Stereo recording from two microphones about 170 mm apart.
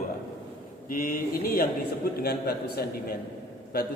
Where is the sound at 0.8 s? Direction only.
55° left (ahead or behind).